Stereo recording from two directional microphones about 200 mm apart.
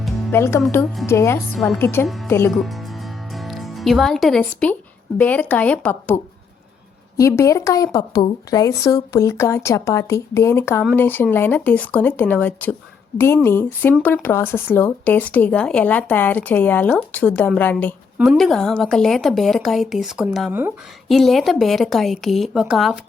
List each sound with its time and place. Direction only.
0.0 s music: 10° left (ahead or behind)
0.7 s speech: 10° left (ahead or behind)
1.5 s a woman's voice: centre (ahead or behind)
1.8 s speech: 10° left (ahead or behind)
2.5 s speech: centre (ahead or behind)
7.2 s a woman's voice: 15° left (ahead or behind); by 20.7 s 10° right (ahead or behind)
21.1 s a woman's voice: centre (ahead or behind)